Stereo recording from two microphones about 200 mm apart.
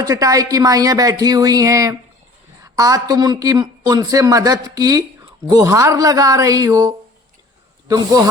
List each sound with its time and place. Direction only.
0.0 s speech: 15° right (ahead or behind)